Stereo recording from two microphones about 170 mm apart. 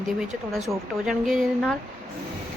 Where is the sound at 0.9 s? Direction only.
Centre (ahead or behind).